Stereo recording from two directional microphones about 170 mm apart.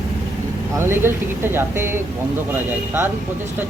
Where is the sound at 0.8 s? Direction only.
15° right (ahead or behind).